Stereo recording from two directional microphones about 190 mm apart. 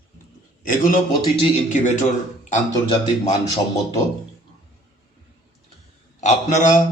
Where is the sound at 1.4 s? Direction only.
40° left (ahead or behind).